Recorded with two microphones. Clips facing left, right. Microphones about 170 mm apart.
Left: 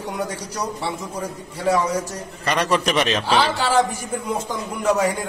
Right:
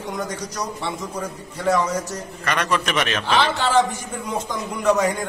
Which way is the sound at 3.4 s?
10° left (ahead or behind).